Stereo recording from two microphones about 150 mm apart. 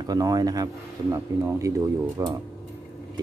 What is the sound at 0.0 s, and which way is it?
Speech, 25° right (ahead or behind).